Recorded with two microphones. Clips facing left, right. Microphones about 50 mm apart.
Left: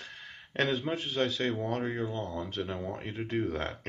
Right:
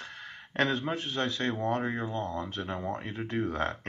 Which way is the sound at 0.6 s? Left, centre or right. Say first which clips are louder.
Right 1 dB; right.